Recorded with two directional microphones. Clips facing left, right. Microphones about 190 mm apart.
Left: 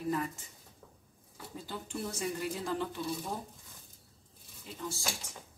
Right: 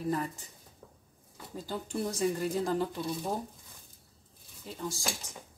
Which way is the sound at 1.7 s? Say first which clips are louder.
Right 5 dB; 40° right (ahead or behind).